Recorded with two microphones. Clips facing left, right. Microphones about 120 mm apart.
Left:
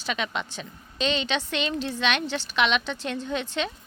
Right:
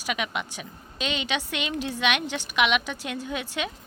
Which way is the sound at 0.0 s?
10° right (ahead or behind).